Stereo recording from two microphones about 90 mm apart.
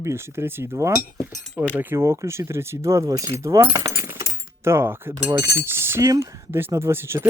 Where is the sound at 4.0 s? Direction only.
35° right (ahead or behind).